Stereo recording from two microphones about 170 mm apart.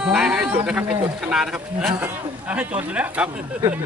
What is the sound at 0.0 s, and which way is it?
Speech, 5° right (ahead or behind).